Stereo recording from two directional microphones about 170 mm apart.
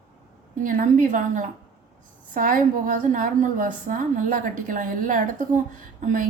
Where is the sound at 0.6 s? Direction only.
50° right (ahead or behind).